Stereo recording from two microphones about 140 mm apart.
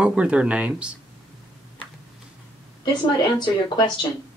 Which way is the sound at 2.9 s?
35° left (ahead or behind).